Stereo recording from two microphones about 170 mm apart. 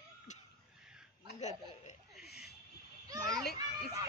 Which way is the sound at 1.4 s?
40° left (ahead or behind).